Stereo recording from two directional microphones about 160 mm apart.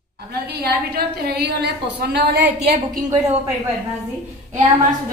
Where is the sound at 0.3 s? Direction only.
85° right.